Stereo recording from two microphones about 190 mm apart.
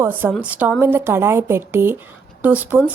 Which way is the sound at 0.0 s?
10° right (ahead or behind).